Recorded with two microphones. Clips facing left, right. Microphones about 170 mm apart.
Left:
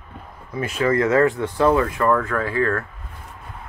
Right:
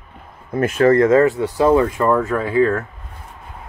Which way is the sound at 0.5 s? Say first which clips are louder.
Right 7 dB; 50° right (ahead or behind).